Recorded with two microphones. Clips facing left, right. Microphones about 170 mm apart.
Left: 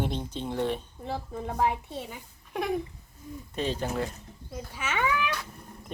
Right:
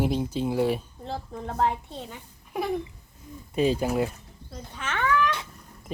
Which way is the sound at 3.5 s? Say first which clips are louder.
Right 6 dB; 10° right (ahead or behind).